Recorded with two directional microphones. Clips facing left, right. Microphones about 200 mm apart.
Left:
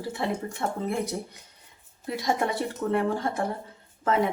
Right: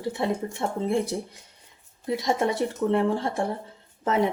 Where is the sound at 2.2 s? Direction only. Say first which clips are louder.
Right 2 dB; 20° right (ahead or behind).